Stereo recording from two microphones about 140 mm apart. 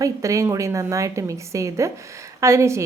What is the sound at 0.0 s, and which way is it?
A woman's voice, 20° right (ahead or behind).